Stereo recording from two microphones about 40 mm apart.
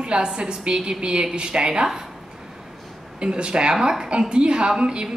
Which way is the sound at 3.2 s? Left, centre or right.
Right.